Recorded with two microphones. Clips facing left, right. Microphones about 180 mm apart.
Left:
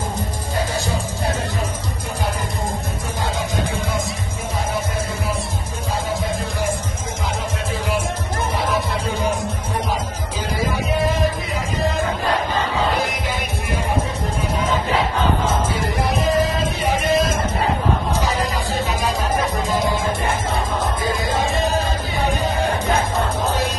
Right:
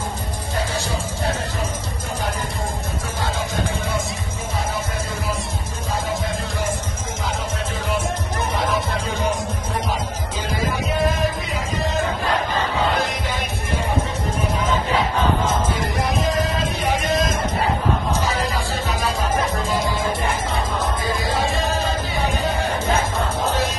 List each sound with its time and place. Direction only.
16.4 s music: 10° left (ahead or behind)
19.7 s music: 25° left (ahead or behind)